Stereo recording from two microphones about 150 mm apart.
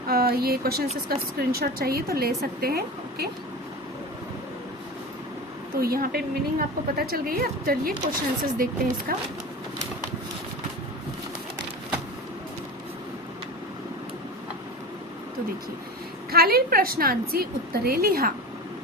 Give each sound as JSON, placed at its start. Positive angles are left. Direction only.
{"t": 0.1, "sound": "a woman's voice", "side_deg": -90}
{"t": 5.7, "sound": "a woman's voice", "side_deg": -80}
{"t": 16.3, "sound": "a woman's voice", "side_deg": -90}